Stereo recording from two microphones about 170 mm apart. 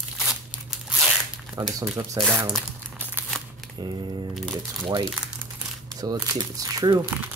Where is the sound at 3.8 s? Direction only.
25° right (ahead or behind).